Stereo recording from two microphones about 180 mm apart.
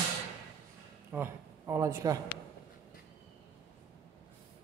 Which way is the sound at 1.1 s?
15° right (ahead or behind).